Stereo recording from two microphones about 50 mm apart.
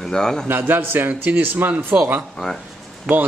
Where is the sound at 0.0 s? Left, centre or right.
Centre.